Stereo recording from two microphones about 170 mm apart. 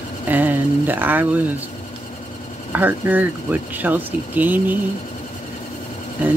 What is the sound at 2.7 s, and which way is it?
Speech, 10° right (ahead or behind).